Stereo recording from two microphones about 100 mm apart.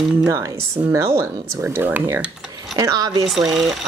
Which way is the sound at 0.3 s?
30° right (ahead or behind).